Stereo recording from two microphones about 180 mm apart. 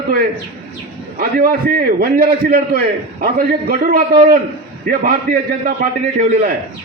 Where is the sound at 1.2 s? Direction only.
50° right (ahead or behind).